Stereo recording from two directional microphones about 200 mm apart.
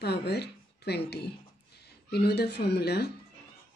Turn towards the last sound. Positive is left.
turn(degrees=55)  # may be behind; listen again after turning